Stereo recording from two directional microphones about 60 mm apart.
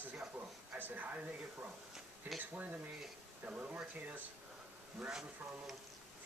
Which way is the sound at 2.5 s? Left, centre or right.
Right.